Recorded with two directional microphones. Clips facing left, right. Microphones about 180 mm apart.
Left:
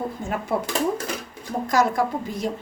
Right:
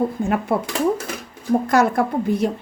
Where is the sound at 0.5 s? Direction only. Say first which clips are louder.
Even; 55° right (ahead or behind).